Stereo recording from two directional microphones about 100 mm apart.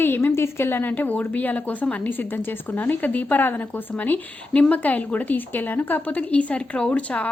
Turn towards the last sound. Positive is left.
turn(degrees=15)  # may be behind; listen again after turning